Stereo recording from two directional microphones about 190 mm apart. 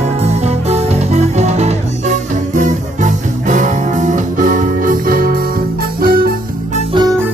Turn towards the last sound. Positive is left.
turn(degrees=-20)  # may be behind; listen again after turning